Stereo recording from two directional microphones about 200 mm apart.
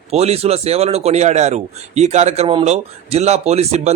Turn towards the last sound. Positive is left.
turn(degrees=-30)  # may be behind; listen again after turning